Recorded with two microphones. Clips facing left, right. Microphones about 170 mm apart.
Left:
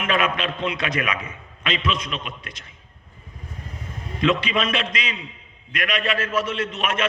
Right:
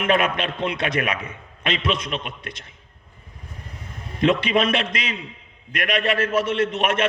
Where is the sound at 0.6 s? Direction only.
55° right (ahead or behind).